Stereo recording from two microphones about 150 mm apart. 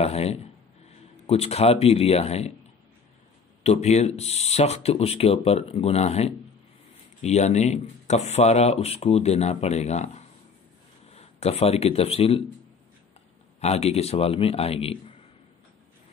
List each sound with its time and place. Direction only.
0.0 s speech: 45° left (ahead or behind)
3.6 s speech: 45° left (ahead or behind)
13.6 s a man's voice: 45° left (ahead or behind)